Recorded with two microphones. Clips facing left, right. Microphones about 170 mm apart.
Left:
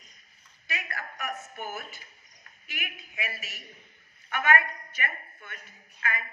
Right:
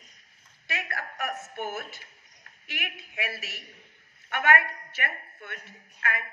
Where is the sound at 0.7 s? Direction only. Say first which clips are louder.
Right 2 dB; 70° right (ahead or behind).